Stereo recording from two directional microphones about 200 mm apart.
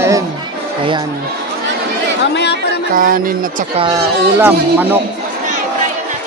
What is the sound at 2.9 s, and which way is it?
Speech, 45° right (ahead or behind).